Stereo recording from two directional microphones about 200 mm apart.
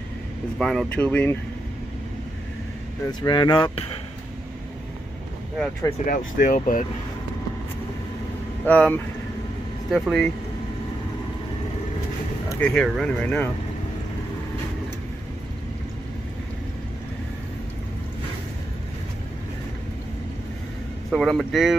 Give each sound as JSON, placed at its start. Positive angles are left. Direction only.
{"t": 0.6, "sound": "speech", "side_deg": 5}
{"t": 3.1, "sound": "speech", "side_deg": 20}
{"t": 6.0, "sound": "speech", "side_deg": 45}
{"t": 8.6, "sound": "speech", "side_deg": 10}
{"t": 12.4, "sound": "speech", "side_deg": 5}
{"t": 21.1, "sound": "speech", "side_deg": 0}